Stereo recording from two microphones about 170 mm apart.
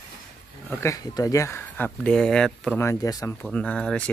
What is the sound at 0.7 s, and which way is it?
Speech, 15° left (ahead or behind).